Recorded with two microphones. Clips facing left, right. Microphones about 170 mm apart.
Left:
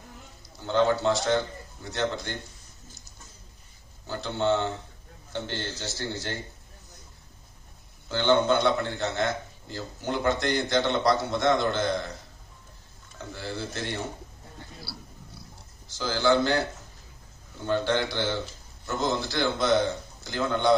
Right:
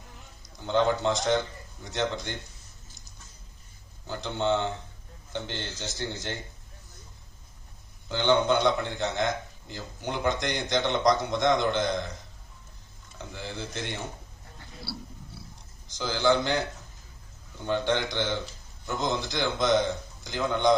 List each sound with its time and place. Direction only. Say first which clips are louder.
0.4 s a man's voice: left 1 dB; 20° right (ahead or behind)
4.1 s a man's voice: left 1 dB; 20° right (ahead or behind)
8.1 s a man's voice: left 1 dB; 20° right (ahead or behind)
13.2 s a man's voice: left 3 dB; 20° right (ahead or behind)
14.8 s pig: right 4 dB; centre (ahead or behind)
15.9 s a man's voice: left 1 dB; 20° right (ahead or behind)
17.6 s a man's voice: left 1 dB; 20° right (ahead or behind)